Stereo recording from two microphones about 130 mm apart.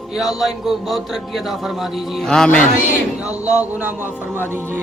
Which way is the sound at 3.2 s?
10° right (ahead or behind).